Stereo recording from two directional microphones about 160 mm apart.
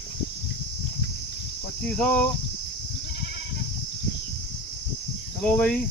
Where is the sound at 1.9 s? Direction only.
5° left (ahead or behind).